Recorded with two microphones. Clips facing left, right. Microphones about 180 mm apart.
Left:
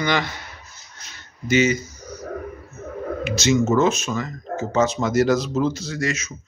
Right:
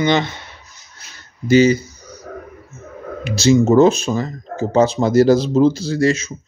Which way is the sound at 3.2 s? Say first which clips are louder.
Right 6 dB; 30° right (ahead or behind).